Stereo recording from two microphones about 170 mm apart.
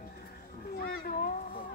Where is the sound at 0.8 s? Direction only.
60° left (ahead or behind).